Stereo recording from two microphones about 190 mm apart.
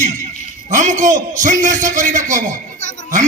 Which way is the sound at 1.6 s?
40° right (ahead or behind).